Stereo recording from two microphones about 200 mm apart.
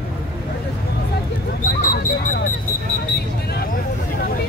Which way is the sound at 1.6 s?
40° left (ahead or behind).